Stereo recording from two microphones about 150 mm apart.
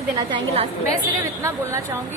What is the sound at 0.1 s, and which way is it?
Speech, 25° right (ahead or behind).